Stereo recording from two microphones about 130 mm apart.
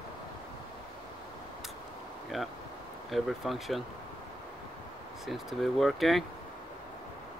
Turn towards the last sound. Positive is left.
turn(degrees=0)  # may be behind; listen again after turning